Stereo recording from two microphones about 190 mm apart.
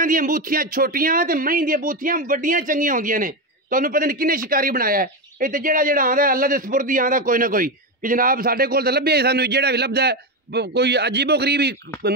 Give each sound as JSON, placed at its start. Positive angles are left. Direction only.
{"t": 0.0, "sound": "speech", "side_deg": -45}